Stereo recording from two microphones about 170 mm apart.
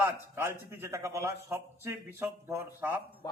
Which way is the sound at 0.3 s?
15° right (ahead or behind).